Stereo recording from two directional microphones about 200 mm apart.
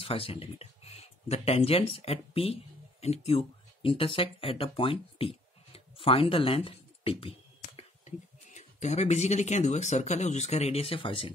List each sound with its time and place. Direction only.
0.0 s speech: 30° left (ahead or behind)